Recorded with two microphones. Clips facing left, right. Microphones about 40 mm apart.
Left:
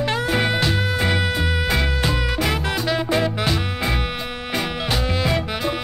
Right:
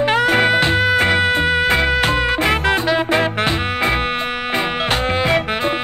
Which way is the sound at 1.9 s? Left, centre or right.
Right.